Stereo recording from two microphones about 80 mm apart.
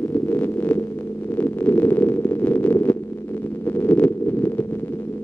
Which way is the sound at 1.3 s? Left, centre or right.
Left.